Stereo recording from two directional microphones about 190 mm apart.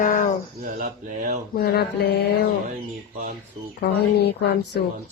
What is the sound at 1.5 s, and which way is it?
Speech, 55° left (ahead or behind).